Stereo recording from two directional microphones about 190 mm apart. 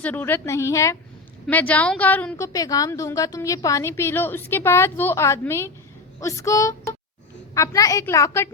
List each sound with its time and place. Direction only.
0.0 s a woman's voice: 10° left (ahead or behind)